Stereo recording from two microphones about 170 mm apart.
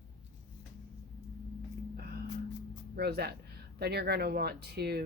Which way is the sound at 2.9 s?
70° right (ahead or behind).